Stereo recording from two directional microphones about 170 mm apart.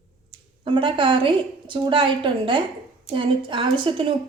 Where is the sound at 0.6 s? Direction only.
30° right (ahead or behind).